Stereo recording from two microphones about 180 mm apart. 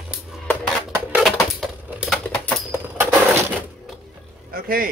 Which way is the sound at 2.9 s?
10° right (ahead or behind).